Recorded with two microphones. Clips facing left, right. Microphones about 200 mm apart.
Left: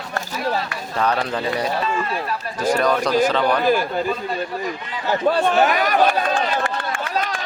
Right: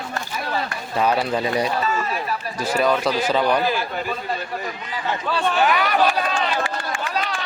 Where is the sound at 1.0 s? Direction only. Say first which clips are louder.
Right 1 dB; 10° right (ahead or behind).